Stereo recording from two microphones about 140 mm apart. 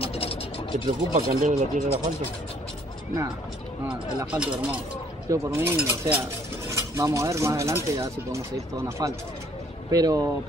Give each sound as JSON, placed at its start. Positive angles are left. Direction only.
{"t": 0.0, "sound": "vehicle", "side_deg": 40}
{"t": 1.1, "sound": "speech", "side_deg": -60}
{"t": 4.3, "sound": "a sound", "side_deg": -10}
{"t": 6.7, "sound": "speech", "side_deg": -20}